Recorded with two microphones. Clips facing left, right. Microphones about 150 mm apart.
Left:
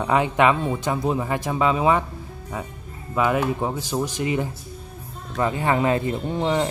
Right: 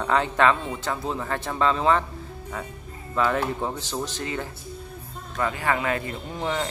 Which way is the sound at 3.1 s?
10° left (ahead or behind).